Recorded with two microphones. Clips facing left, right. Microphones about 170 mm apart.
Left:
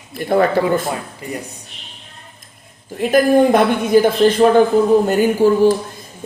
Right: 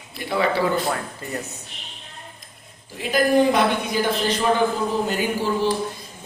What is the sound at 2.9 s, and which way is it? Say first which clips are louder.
Speech: left 6 dB; 50° left (ahead or behind).